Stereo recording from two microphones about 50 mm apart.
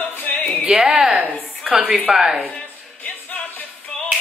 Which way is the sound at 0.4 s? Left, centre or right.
Left.